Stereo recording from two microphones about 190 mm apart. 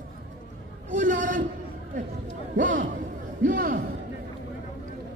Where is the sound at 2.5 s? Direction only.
45° right (ahead or behind).